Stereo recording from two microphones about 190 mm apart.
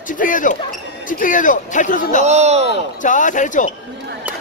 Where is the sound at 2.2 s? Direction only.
35° right (ahead or behind).